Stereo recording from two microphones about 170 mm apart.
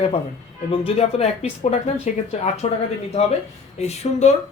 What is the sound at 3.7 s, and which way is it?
Speech, 40° left (ahead or behind).